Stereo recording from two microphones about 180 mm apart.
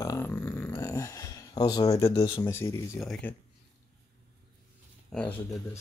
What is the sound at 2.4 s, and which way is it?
Speech, 15° left (ahead or behind).